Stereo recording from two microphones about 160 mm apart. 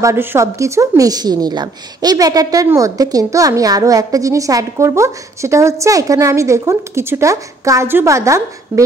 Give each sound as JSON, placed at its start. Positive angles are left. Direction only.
{"t": 0.0, "sound": "a woman's voice", "side_deg": -15}